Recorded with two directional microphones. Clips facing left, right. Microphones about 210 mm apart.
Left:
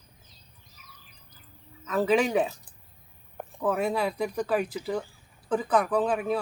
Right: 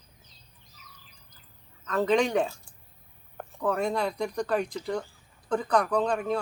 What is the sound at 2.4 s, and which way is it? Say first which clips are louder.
Speech: left 1 dB; 20° left (ahead or behind).